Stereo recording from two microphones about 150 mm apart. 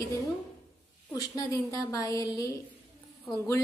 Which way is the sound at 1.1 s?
25° left (ahead or behind).